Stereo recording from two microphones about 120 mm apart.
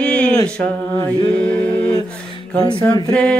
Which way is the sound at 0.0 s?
10° left (ahead or behind).